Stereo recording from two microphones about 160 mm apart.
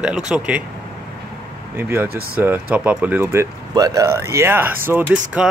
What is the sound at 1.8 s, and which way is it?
Speech, 15° right (ahead or behind).